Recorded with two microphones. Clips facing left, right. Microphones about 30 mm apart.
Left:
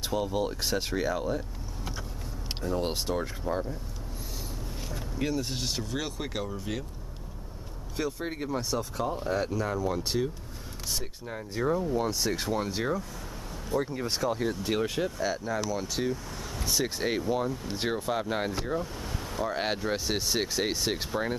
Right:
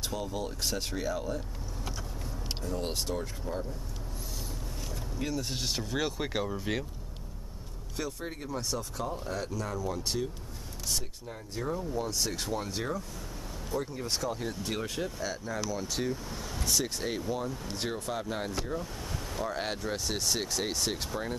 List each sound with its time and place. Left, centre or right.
0.0 s speech: centre
2.6 s speech: centre
4.9 s speech: centre
8.2 s speech: left
11.6 s speech: centre
19.5 s speech: left